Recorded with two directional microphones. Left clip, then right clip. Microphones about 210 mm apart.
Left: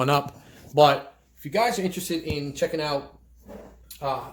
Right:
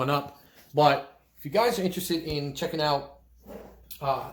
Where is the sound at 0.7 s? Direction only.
15° left (ahead or behind).